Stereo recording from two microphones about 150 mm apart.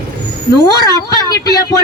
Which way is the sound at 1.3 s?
25° left (ahead or behind).